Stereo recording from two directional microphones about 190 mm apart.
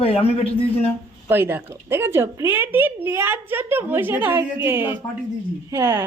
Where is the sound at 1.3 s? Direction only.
10° right (ahead or behind).